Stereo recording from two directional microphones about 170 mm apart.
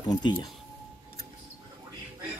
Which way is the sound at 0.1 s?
25° left (ahead or behind).